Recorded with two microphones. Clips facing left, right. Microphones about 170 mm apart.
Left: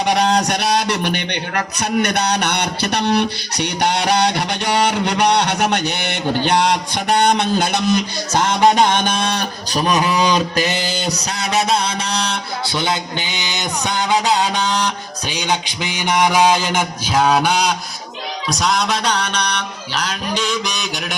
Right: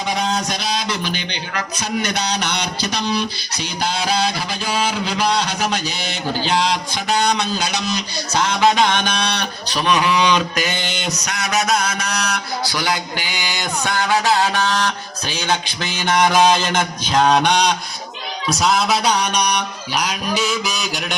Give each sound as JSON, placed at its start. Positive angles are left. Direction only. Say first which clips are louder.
{"t": 0.0, "sound": "speech", "louder": "left 5 dB", "side_deg": 70}
{"t": 18.4, "sound": "music", "louder": "right 2 dB", "side_deg": 0}